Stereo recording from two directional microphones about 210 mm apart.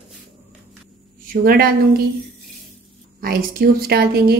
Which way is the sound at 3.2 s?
45° right (ahead or behind).